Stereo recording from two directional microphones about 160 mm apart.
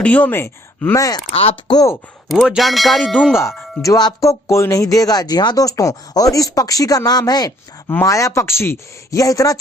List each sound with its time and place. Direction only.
0.0 s speech: 10° left (ahead or behind)
1.3 s speech: 35° left (ahead or behind)
2.3 s speech: centre (ahead or behind)
3.8 s speech: 20° left (ahead or behind)